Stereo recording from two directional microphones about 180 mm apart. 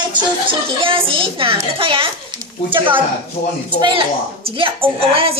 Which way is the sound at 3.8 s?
25° right (ahead or behind).